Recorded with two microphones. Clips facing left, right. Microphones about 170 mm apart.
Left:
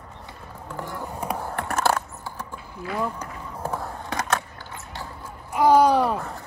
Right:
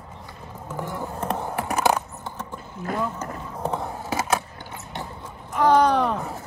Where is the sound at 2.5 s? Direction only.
45° right (ahead or behind).